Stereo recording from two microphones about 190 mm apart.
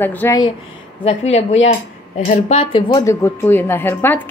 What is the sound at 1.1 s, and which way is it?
Speech, 35° left (ahead or behind).